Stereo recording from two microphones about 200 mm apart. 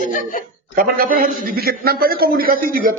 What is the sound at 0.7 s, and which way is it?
A man's voice, 45° right (ahead or behind).